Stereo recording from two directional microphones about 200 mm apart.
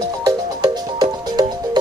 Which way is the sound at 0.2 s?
20° right (ahead or behind).